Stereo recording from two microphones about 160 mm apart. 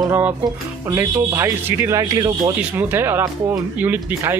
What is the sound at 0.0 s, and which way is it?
Music, 20° right (ahead or behind).